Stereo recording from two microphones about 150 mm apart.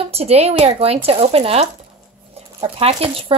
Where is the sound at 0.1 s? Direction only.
45° right (ahead or behind).